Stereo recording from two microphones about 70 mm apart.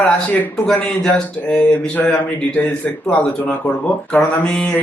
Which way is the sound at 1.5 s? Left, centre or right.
Centre.